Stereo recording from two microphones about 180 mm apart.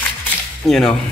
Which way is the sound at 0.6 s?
Centre (ahead or behind).